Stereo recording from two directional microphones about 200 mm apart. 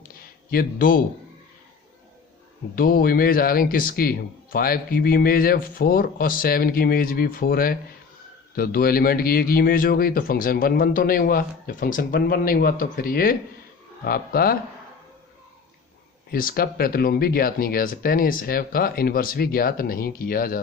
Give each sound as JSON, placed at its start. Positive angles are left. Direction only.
{"t": 0.5, "sound": "a man's voice", "side_deg": 45}
{"t": 2.7, "sound": "a man's voice", "side_deg": 45}
{"t": 16.3, "sound": "a man's voice", "side_deg": 45}